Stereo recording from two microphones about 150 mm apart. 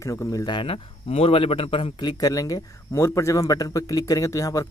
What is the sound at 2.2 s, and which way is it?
Speech, 25° left (ahead or behind).